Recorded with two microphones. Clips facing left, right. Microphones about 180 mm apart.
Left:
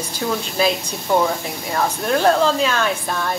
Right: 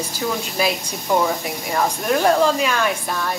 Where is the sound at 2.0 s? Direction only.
10° right (ahead or behind).